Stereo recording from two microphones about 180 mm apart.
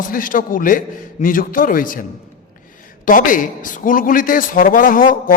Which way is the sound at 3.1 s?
50° left (ahead or behind).